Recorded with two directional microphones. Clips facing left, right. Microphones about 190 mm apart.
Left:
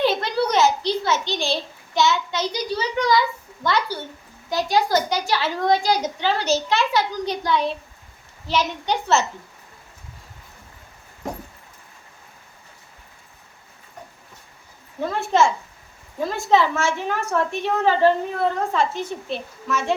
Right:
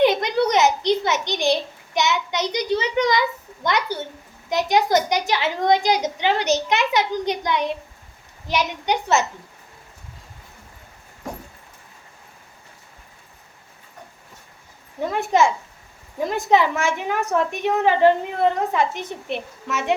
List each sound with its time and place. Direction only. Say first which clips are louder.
0.0 s a child's voice: right 3 dB; 15° right (ahead or behind)
15.1 s a woman's voice: right 1 dB; 15° right (ahead or behind)